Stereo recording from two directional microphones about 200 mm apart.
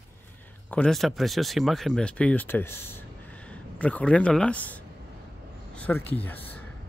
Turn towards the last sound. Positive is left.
turn(degrees=10)  # may be behind; listen again after turning